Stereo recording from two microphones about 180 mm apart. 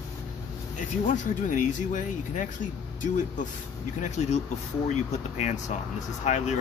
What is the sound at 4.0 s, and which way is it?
Speech, 40° left (ahead or behind).